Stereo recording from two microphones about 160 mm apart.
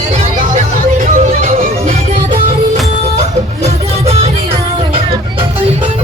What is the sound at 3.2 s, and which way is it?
Music, 45° right (ahead or behind).